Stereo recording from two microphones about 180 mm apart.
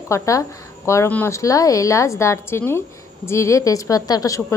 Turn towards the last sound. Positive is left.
turn(degrees=20)  # may be behind; listen again after turning